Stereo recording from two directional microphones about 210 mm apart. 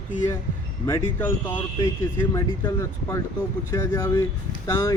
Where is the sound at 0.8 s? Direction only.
10° left (ahead or behind).